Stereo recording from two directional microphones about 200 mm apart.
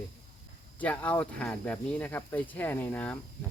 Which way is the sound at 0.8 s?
5° left (ahead or behind).